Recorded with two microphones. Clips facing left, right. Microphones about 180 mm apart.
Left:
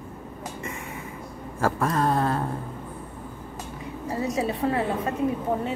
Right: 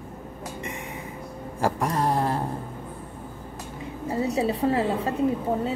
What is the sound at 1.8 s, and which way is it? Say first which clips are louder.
Speech: left 2 dB; 20° right (ahead or behind).